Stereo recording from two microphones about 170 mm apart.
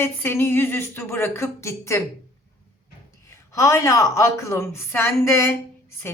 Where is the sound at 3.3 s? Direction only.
15° left (ahead or behind).